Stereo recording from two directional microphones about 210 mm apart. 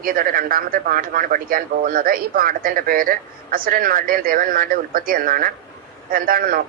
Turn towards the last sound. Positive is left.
turn(degrees=-45)  # may be behind; listen again after turning